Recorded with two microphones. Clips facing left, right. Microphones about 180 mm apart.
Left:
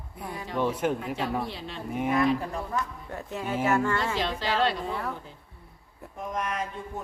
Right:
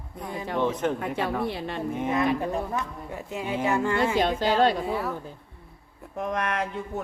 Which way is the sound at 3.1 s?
10° right (ahead or behind).